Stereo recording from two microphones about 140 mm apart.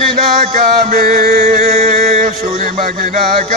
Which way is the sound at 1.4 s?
55° right (ahead or behind).